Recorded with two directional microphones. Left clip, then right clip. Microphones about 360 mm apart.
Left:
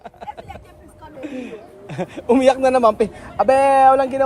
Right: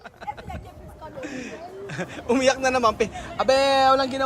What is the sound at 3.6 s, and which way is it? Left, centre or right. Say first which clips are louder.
Speech: left 6 dB; centre.